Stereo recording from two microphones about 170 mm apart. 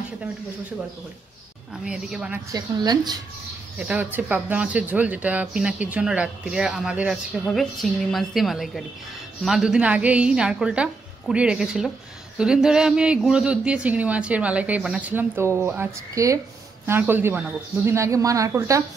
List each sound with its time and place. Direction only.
1.9 s a woman's voice: 5° right (ahead or behind)
2.5 s speech: 25° right (ahead or behind)
3.8 s a woman's voice: 5° right (ahead or behind)